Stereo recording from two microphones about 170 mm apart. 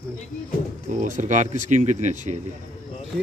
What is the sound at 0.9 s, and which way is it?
Speech, 45° right (ahead or behind).